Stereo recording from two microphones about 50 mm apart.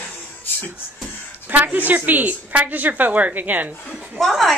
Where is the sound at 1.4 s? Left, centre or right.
Right.